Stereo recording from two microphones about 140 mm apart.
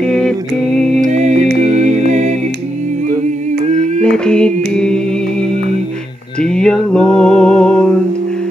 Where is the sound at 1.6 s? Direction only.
55° right (ahead or behind).